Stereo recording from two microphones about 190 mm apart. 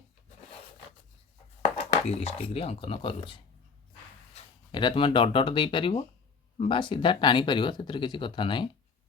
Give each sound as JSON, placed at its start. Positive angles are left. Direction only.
{"t": 1.6, "sound": "speech", "side_deg": 35}
{"t": 4.7, "sound": "speech", "side_deg": 25}